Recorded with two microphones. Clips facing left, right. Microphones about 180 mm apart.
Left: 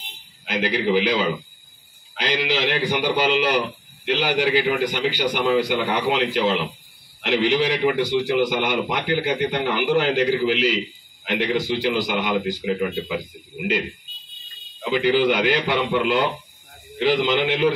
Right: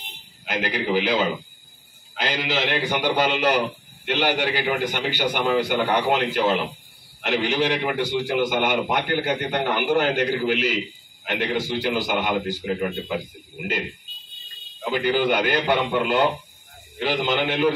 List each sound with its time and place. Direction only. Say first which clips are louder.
0.5 s a man's voice: left 3 dB; 45° right (ahead or behind)
2.2 s a man's voice: left 2 dB; 50° right (ahead or behind)
15.0 s a man's voice: left 2 dB; 45° right (ahead or behind)